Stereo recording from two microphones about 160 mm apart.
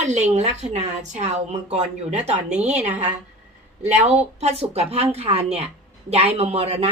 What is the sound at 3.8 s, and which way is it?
Speech, 45° right (ahead or behind).